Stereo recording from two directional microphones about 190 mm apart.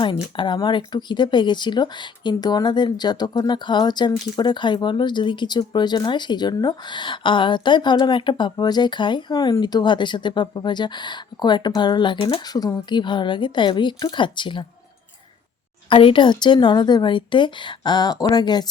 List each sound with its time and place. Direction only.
0.0 s speech: 25° left (ahead or behind)
15.9 s speech: 25° left (ahead or behind)